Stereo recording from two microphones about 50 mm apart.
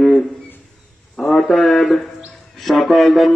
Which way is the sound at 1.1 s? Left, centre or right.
Centre.